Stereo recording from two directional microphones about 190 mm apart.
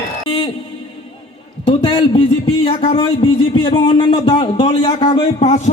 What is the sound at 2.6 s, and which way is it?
Speech, 30° left (ahead or behind).